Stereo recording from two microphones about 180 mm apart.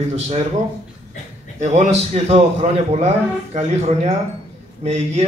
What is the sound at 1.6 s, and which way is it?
A man's voice, 40° right (ahead or behind).